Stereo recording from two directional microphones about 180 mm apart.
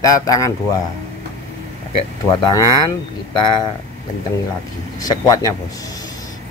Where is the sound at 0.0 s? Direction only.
20° left (ahead or behind).